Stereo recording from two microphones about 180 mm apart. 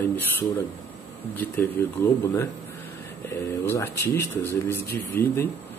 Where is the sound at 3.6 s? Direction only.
15° left (ahead or behind).